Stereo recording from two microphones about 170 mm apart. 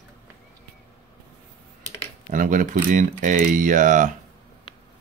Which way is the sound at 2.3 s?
50° right (ahead or behind).